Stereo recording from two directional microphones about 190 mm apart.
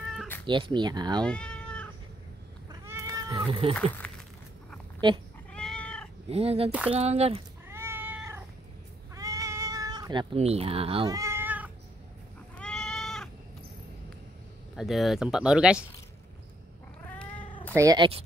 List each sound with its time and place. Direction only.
0.5 s speech: 25° right (ahead or behind)
1.2 s cat: 5° left (ahead or behind)
2.7 s cat: 15° right (ahead or behind)
4.0 s a sound: 5° left (ahead or behind)
5.5 s cat: 5° left (ahead or behind)
6.3 s speech: 30° right (ahead or behind)
7.6 s cat: 15° right (ahead or behind)
10.3 s speech: 35° right (ahead or behind)
11.1 s cat: 15° right (ahead or behind)
12.5 s goat: 5° left (ahead or behind)
14.8 s speech: centre (ahead or behind)
17.7 s speech: 20° right (ahead or behind)